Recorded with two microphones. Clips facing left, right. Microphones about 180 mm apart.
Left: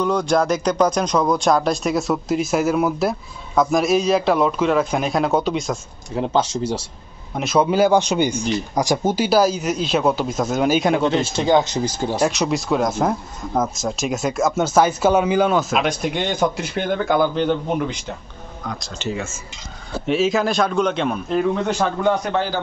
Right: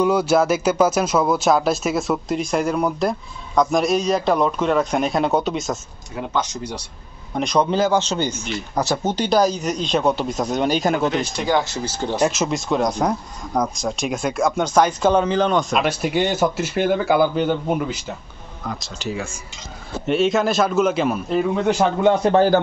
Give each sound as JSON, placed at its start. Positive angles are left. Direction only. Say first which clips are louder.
{"t": 0.0, "sound": "speech", "louder": "right 2 dB", "side_deg": -5}
{"t": 6.1, "sound": "speech", "louder": "left 5 dB", "side_deg": 30}
{"t": 7.3, "sound": "speech", "louder": "left 2 dB", "side_deg": 5}
{"t": 11.1, "sound": "speech", "louder": "left 3 dB", "side_deg": 25}
{"t": 12.2, "sound": "speech", "louder": "even", "side_deg": 0}
{"t": 22.2, "sound": "a man's voice", "louder": "right 7 dB", "side_deg": -35}